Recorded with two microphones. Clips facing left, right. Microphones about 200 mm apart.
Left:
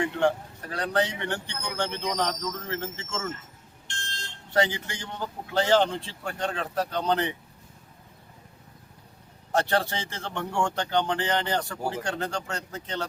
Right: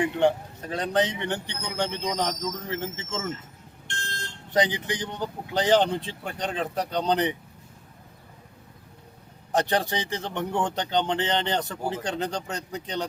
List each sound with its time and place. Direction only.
0.0 s speech: 20° right (ahead or behind)
3.8 s a sound: 60° right (ahead or behind)
4.5 s speech: 20° right (ahead or behind)
9.5 s speech: 15° right (ahead or behind)